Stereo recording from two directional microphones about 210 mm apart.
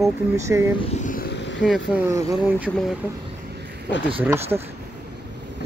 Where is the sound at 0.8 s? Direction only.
35° left (ahead or behind); by 1.6 s 60° left (ahead or behind).